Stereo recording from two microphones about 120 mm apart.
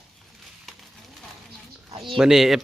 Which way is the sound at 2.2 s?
5° right (ahead or behind).